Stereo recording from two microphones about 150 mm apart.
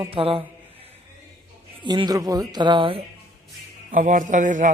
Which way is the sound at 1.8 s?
30° right (ahead or behind).